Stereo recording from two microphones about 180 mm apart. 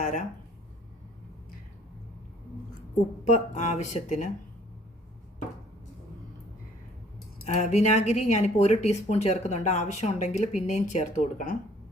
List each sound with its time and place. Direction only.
0.0 s speech: 45° left (ahead or behind)
3.2 s speech: 40° left (ahead or behind)
7.4 s speech: 40° left (ahead or behind)